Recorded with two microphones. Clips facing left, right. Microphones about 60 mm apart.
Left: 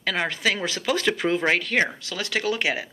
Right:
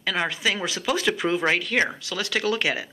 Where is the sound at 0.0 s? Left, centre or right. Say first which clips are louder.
Even; left.